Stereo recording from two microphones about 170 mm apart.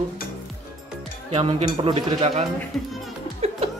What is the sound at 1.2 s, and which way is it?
Speech, 35° right (ahead or behind).